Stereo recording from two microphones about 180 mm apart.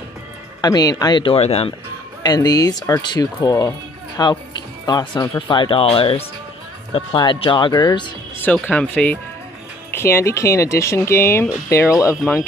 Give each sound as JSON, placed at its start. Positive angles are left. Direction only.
{"t": 0.6, "sound": "speech", "side_deg": 20}
{"t": 2.2, "sound": "speech", "side_deg": 20}
{"t": 8.4, "sound": "speech", "side_deg": 10}